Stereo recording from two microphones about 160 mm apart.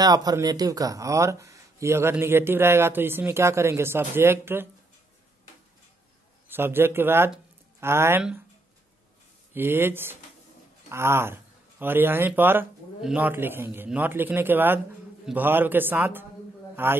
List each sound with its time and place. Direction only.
0.0 s speech: 25° right (ahead or behind)
6.5 s speech: 15° right (ahead or behind)
8.2 s speech: 5° right (ahead or behind)
9.5 s speech: 15° right (ahead or behind)